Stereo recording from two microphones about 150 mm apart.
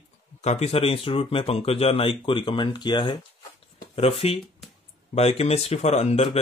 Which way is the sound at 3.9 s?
40° left (ahead or behind).